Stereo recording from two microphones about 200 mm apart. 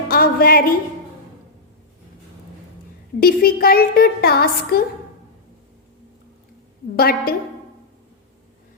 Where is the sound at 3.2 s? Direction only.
50° left (ahead or behind).